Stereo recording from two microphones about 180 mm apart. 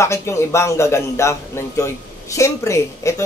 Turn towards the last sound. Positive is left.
turn(degrees=15)  # may be behind; listen again after turning